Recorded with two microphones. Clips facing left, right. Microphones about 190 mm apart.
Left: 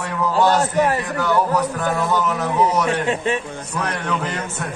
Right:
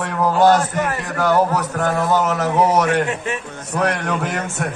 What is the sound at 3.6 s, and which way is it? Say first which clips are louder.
A man's voice: right 7 dB; 70° right (ahead or behind).